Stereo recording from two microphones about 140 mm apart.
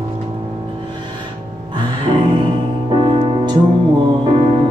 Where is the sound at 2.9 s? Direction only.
35° right (ahead or behind).